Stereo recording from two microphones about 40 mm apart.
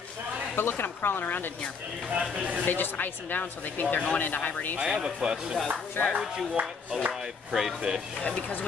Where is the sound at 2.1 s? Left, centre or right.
Right.